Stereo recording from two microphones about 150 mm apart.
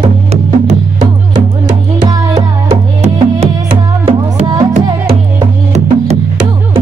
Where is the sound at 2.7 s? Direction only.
40° right (ahead or behind).